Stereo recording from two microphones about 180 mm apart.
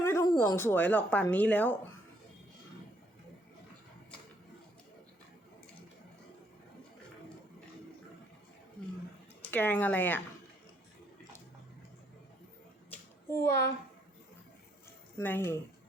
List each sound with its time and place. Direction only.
0.0 s speech: 15° left (ahead or behind)
9.4 s speech: 10° left (ahead or behind)
13.3 s a woman's voice: 15° left (ahead or behind)
15.2 s a woman's voice: 10° left (ahead or behind)